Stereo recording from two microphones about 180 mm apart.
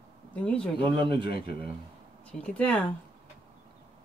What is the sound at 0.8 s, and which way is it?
Speech, 25° right (ahead or behind).